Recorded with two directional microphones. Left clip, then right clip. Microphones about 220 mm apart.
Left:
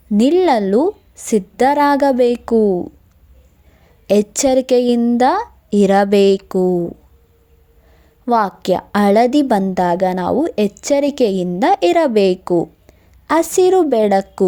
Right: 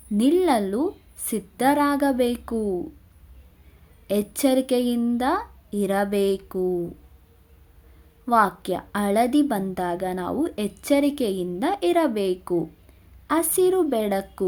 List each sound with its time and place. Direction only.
0.2 s a woman's voice: 35° left (ahead or behind)
4.0 s a woman's voice: 35° left (ahead or behind)
8.2 s a woman's voice: 35° left (ahead or behind)